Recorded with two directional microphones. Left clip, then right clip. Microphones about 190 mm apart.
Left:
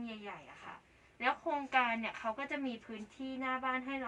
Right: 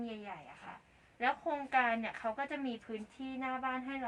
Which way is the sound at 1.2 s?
20° right (ahead or behind).